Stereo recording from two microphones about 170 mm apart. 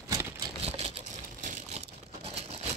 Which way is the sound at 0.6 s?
40° right (ahead or behind).